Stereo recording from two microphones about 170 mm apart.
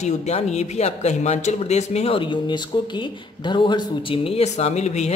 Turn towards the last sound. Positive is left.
turn(degrees=40)  # may be behind; listen again after turning